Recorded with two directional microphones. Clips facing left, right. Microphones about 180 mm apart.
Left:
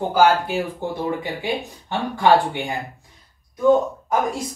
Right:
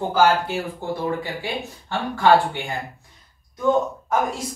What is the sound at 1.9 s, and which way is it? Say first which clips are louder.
Speech: even; 15° left (ahead or behind).